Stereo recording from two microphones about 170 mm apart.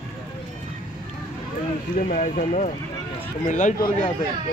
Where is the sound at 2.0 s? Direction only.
45° left (ahead or behind).